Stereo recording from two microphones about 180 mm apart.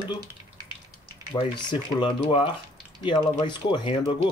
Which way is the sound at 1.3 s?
25° left (ahead or behind).